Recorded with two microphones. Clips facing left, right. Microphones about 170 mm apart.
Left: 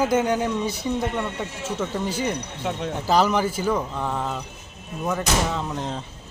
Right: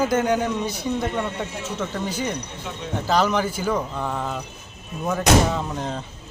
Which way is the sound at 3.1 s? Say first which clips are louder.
Left 1 dB; 5° left (ahead or behind).